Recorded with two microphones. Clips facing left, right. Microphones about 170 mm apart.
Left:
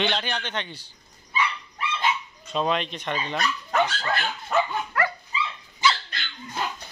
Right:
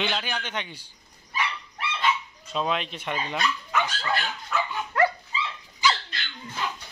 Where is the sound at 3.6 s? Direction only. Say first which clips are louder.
Left 3 dB; 45° left (ahead or behind).